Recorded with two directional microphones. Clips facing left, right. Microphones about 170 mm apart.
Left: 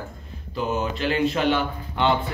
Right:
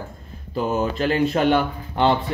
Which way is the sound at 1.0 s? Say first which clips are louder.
Right 2 dB; 45° right (ahead or behind).